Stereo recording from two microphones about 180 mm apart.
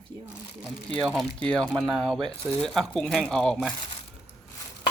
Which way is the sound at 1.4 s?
5° left (ahead or behind).